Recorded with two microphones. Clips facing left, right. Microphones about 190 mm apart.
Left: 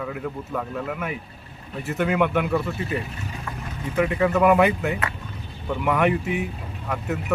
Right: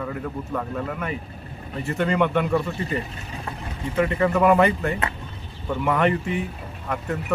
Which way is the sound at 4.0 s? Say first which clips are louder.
Even; 5° left (ahead or behind).